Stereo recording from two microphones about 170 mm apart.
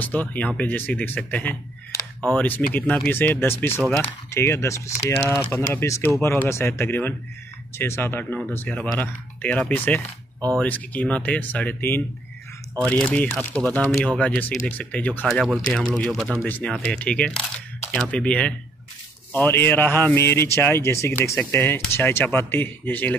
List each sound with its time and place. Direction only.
0.0 s speech: 10° left (ahead or behind)